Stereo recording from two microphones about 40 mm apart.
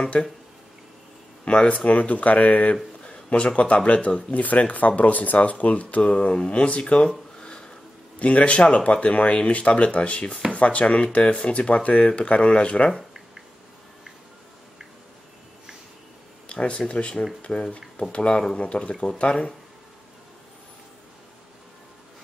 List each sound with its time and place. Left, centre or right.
1.4 s speech: left
7.1 s a sound: centre
8.2 s speech: left
16.4 s speech: left